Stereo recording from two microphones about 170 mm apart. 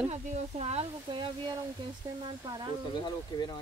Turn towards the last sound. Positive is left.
turn(degrees=25)  # may be behind; listen again after turning